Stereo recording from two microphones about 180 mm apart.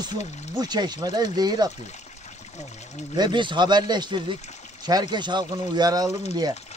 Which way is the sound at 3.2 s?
25° right (ahead or behind).